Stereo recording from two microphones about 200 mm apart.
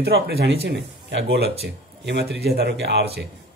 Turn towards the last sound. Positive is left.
turn(degrees=-55)  # may be behind; listen again after turning